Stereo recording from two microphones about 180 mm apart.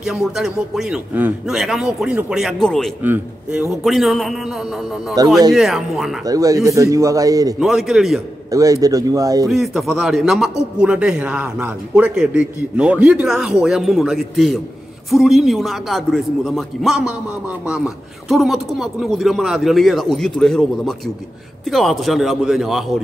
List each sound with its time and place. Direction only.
0.0 s a man's voice: centre (ahead or behind)
3.0 s a man's voice: 10° right (ahead or behind)
3.8 s a man's voice: centre (ahead or behind)
5.2 s speech: 20° right (ahead or behind)
5.5 s a man's voice: centre (ahead or behind)
6.2 s speech: 20° right (ahead or behind)
7.6 s a man's voice: centre (ahead or behind)
8.5 s speech: 20° right (ahead or behind)
9.5 s a man's voice: centre (ahead or behind)